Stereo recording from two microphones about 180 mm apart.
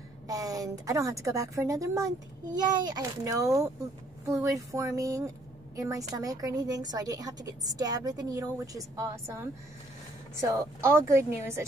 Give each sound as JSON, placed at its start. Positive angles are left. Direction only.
{"t": 0.3, "sound": "a woman's voice", "side_deg": -20}